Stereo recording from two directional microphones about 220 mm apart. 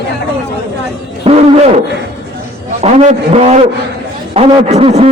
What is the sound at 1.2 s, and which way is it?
Wild animals, 30° right (ahead or behind).